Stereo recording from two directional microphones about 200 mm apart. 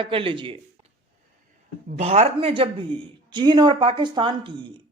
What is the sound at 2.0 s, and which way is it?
Speech, 30° right (ahead or behind).